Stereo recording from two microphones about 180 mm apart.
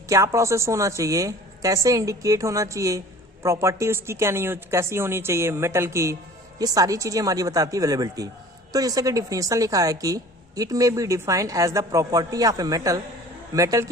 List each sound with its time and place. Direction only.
0.1 s a woman's voice: 15° right (ahead or behind)